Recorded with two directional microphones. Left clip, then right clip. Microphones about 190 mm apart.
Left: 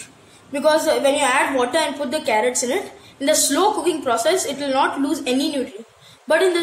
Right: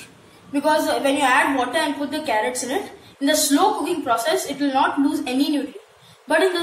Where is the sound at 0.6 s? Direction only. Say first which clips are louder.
Left 3 dB; 45° left (ahead or behind).